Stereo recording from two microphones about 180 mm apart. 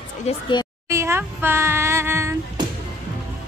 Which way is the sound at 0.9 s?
15° right (ahead or behind).